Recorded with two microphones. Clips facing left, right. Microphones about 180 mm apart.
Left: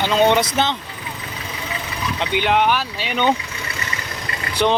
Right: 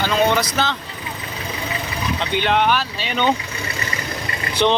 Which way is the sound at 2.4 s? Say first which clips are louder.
Left 1 dB; 15° left (ahead or behind).